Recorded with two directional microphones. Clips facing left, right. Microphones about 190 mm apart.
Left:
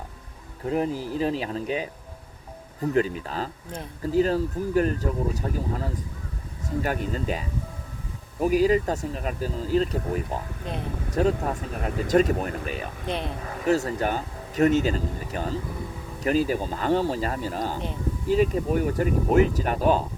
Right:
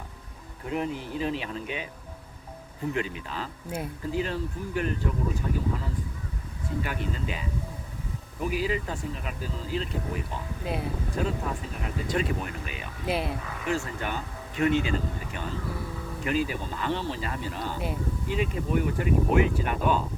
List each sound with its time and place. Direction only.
0.6 s speech: 35° left (ahead or behind)
2.9 s speech: 40° left (ahead or behind)
3.7 s speech: 10° right (ahead or behind)
4.0 s speech: 40° left (ahead or behind)
13.1 s speech: 5° right (ahead or behind)
13.7 s speech: 40° left (ahead or behind)